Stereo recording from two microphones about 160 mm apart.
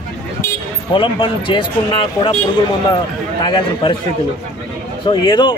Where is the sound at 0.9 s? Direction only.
30° left (ahead or behind).